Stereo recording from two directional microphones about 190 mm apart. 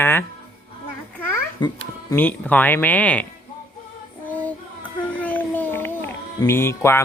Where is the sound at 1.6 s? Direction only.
25° left (ahead or behind).